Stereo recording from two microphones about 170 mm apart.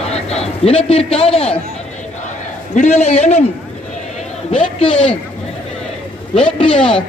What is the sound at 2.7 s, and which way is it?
Speech, 45° left (ahead or behind).